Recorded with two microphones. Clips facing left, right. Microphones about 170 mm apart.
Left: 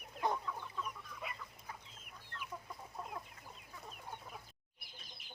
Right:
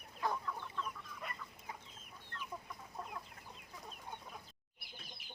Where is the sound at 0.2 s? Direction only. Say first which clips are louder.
Left 2 dB; 20° left (ahead or behind).